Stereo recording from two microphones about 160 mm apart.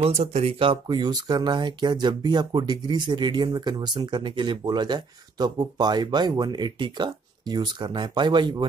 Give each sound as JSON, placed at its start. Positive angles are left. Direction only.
{"t": 0.0, "sound": "speech", "side_deg": -40}